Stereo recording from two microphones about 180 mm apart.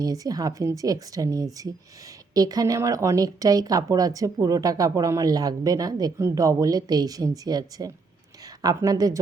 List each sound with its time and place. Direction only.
0.0 s speech: 20° right (ahead or behind)